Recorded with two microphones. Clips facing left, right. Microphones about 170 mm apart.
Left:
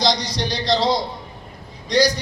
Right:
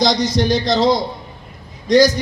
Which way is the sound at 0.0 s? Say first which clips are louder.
Right 5 dB; 45° right (ahead or behind).